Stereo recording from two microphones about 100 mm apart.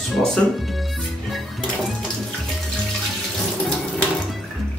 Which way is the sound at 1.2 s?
Centre (ahead or behind).